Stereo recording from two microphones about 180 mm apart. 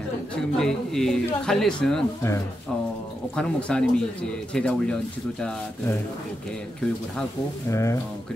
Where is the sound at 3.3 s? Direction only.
5° left (ahead or behind).